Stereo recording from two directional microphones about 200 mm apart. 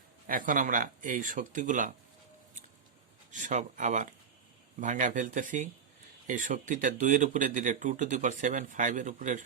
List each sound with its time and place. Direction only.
0.3 s speech: 40° right (ahead or behind)
3.3 s speech: 40° right (ahead or behind)